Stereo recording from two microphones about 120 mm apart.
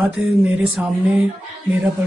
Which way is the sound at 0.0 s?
5° right (ahead or behind).